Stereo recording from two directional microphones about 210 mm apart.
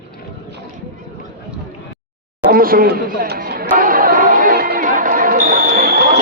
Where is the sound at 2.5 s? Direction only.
45° right (ahead or behind).